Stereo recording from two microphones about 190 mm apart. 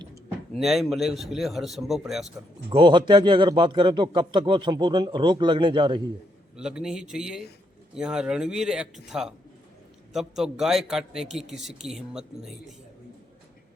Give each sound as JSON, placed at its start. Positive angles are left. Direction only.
{"t": 0.0, "sound": "a sound", "side_deg": -15}
{"t": 0.5, "sound": "speech", "side_deg": 0}
{"t": 2.6, "sound": "a man's voice", "side_deg": -25}
{"t": 6.6, "sound": "speech", "side_deg": -5}